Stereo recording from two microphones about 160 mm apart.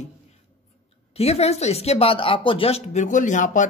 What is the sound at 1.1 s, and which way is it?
A man's voice, 40° left (ahead or behind).